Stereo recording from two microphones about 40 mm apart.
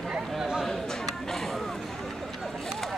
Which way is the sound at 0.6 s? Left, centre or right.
Centre.